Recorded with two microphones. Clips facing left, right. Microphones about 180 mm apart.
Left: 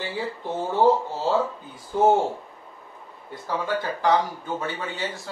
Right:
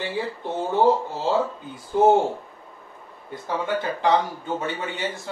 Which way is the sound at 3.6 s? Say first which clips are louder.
Right 1 dB; 25° right (ahead or behind).